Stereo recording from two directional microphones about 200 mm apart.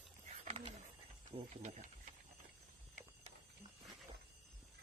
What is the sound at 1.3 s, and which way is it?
Speech, 35° right (ahead or behind).